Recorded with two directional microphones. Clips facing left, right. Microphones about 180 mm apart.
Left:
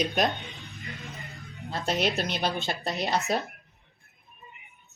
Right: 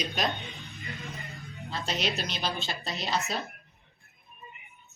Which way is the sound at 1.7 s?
55° left (ahead or behind).